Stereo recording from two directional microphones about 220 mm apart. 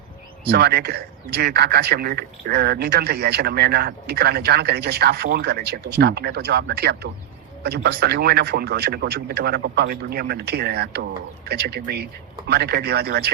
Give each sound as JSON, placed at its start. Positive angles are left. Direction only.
{"t": 0.4, "sound": "speech", "side_deg": -45}